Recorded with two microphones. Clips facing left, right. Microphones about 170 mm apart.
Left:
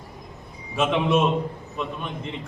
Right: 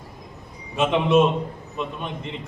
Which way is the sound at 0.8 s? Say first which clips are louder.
Right 3 dB; centre (ahead or behind).